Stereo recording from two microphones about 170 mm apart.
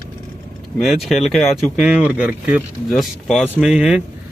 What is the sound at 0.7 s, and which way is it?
Speech, centre (ahead or behind).